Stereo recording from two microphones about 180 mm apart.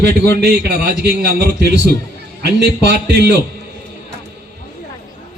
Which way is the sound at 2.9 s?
65° right (ahead or behind).